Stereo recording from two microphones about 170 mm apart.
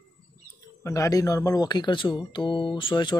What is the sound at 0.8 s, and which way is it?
Speech, 20° left (ahead or behind).